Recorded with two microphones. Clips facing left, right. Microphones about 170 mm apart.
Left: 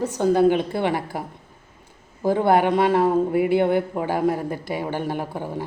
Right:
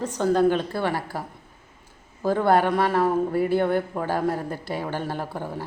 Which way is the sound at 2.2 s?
15° left (ahead or behind).